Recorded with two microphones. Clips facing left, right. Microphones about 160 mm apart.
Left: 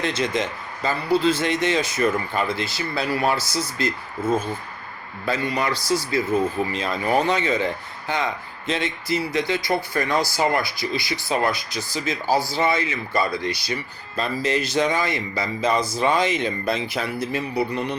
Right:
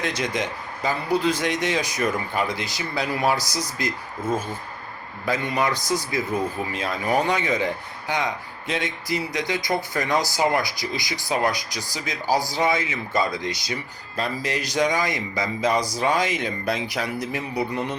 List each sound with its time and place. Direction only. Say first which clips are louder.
0.0 s a man's voice: left 2 dB; 10° right (ahead or behind)